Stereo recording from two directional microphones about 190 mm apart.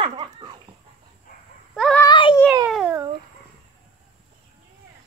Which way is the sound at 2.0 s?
25° left (ahead or behind).